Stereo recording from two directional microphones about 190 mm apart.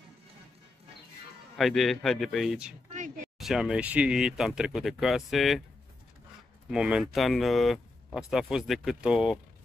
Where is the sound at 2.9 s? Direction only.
40° right (ahead or behind).